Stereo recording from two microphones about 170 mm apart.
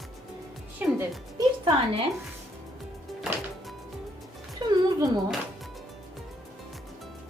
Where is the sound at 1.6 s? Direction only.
35° right (ahead or behind).